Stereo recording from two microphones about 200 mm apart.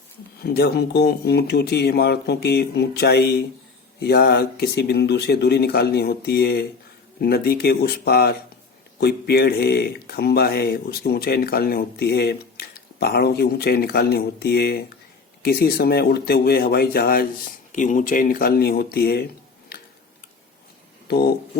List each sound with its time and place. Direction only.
0.4 s speech: 55° left (ahead or behind)